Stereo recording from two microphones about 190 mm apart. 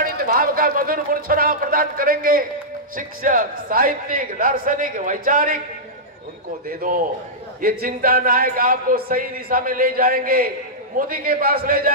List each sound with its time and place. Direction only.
0.0 s a man's voice: 50° right (ahead or behind)
6.8 s a man's voice: 45° right (ahead or behind)